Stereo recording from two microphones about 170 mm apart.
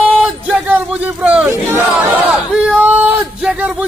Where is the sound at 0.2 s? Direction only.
5° right (ahead or behind).